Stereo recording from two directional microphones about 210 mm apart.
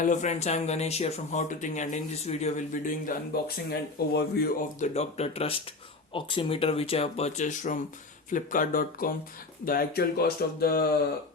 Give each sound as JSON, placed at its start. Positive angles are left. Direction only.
{"t": 0.0, "sound": "speech", "side_deg": 35}
{"t": 4.8, "sound": "speech", "side_deg": 30}